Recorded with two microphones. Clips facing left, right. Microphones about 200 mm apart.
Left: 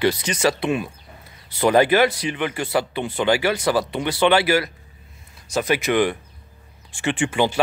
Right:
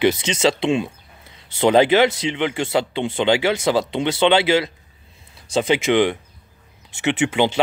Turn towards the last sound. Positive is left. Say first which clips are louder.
# right 2 dB
turn(degrees=-20)  # may be behind; listen again after turning